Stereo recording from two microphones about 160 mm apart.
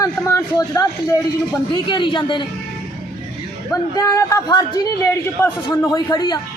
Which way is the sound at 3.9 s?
20° left (ahead or behind).